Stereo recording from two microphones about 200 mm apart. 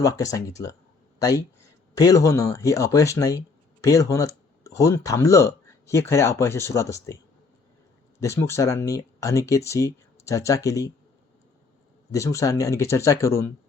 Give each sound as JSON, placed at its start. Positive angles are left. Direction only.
{"t": 0.0, "sound": "speech", "side_deg": 15}
{"t": 2.0, "sound": "speech", "side_deg": 15}
{"t": 8.2, "sound": "speech", "side_deg": 15}
{"t": 12.1, "sound": "speech", "side_deg": 15}